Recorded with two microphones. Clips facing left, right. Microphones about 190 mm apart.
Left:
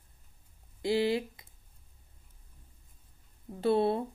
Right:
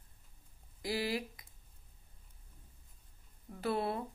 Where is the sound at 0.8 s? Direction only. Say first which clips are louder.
Left 8 dB; 25° left (ahead or behind).